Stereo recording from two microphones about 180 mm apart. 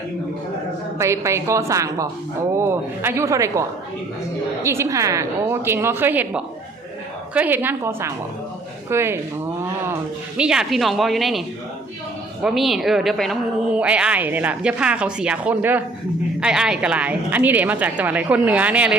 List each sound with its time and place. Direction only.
0.9 s a woman's voice: 15° right (ahead or behind)
10.3 s a woman's voice: 5° right (ahead or behind)